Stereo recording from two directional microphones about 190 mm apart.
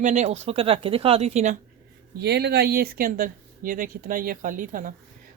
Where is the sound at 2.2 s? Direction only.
60° right (ahead or behind).